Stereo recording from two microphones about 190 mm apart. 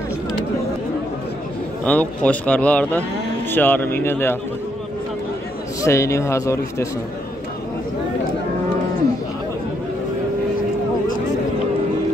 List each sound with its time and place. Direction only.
1.9 s speech: 5° left (ahead or behind)
5.9 s speech: 15° left (ahead or behind)